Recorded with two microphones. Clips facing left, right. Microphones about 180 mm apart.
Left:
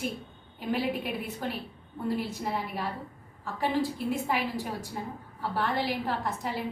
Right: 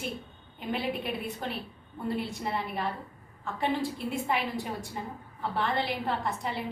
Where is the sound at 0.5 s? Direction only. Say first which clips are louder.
Left 2 dB; 5° left (ahead or behind).